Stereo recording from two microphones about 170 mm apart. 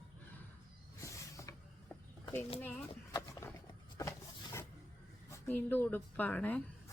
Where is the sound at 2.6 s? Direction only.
15° left (ahead or behind).